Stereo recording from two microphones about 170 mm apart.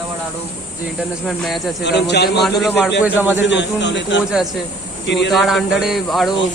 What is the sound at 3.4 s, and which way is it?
Speech, 90° left.